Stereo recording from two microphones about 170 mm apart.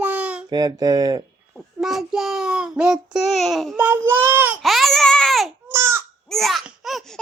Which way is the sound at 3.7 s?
15° right (ahead or behind).